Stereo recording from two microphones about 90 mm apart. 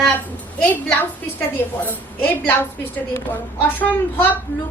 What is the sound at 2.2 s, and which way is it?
Speech, 25° left (ahead or behind).